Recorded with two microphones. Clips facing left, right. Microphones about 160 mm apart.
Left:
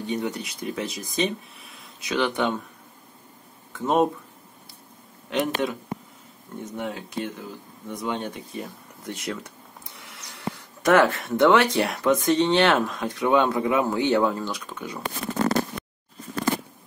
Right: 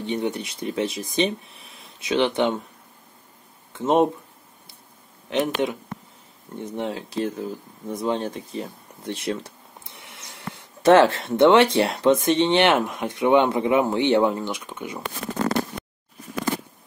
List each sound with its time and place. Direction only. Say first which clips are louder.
0.0 s speech: right 2 dB; 25° right (ahead or behind)
3.7 s speech: right 2 dB; 25° right (ahead or behind)
5.3 s speech: right 2 dB; 20° right (ahead or behind)
8.0 s a sound: right 4 dB; 35° right (ahead or behind)
10.5 s speech: right 4 dB; 25° right (ahead or behind)